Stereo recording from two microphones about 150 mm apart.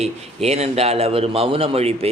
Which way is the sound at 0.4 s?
45° right (ahead or behind).